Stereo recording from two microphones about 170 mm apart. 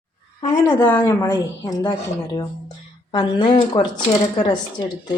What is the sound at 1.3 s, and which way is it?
A woman's voice, 25° left (ahead or behind).